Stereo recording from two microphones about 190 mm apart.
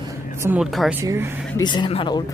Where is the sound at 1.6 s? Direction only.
25° left (ahead or behind).